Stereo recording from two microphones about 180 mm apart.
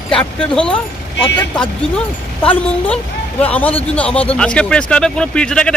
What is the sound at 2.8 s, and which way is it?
Speech, 5° left (ahead or behind).